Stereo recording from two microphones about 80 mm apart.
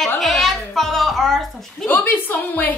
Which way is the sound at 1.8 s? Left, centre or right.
Left.